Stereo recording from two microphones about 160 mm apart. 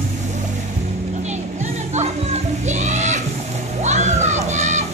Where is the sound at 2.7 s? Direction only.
50° right (ahead or behind).